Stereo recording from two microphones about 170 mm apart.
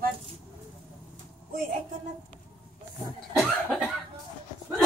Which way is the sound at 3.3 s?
5° right (ahead or behind).